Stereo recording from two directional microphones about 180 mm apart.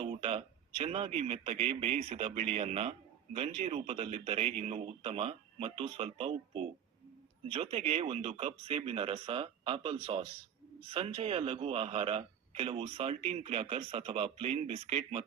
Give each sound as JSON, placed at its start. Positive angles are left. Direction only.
{"t": 0.0, "sound": "a man's voice", "side_deg": -35}